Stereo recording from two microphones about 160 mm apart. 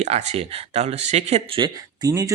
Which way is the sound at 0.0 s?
45° right (ahead or behind).